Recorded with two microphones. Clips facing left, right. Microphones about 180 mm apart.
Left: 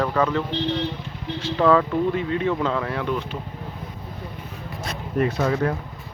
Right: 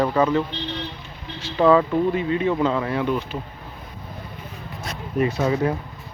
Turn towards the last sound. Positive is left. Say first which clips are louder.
# right 1 dB
turn(degrees=-10)  # may be behind; listen again after turning